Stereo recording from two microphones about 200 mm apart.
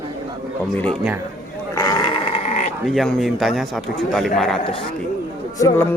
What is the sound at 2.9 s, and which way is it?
Speech, centre (ahead or behind).